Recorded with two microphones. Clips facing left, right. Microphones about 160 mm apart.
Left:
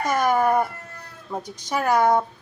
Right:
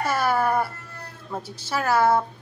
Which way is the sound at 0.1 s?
15° left (ahead or behind).